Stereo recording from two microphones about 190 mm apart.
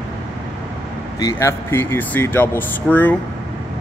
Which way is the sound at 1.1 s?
15° left (ahead or behind).